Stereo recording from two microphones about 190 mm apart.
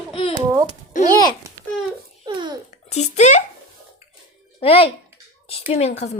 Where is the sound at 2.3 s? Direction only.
25° right (ahead or behind).